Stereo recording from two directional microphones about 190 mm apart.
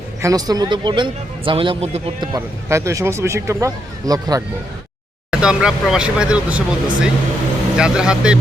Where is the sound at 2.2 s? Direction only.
15° right (ahead or behind).